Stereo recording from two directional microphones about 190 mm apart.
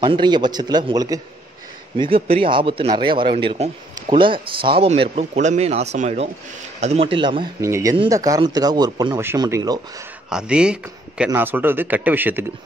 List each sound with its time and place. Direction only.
0.0 s speech: 25° right (ahead or behind)
7.6 s speech: 15° right (ahead or behind)
10.3 s speech: 5° right (ahead or behind)